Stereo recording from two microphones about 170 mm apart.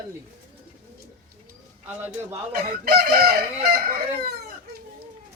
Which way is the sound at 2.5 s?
65° right (ahead or behind).